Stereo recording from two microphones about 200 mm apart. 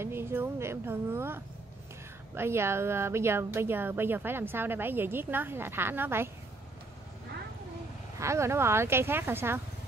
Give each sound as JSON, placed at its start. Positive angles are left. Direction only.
{"t": 0.0, "sound": "a woman's voice", "side_deg": -10}
{"t": 8.2, "sound": "a woman's voice", "side_deg": -15}